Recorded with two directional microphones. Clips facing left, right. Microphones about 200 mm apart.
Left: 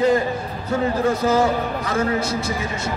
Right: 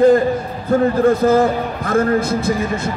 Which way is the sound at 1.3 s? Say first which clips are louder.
Right 4 dB; 55° right (ahead or behind).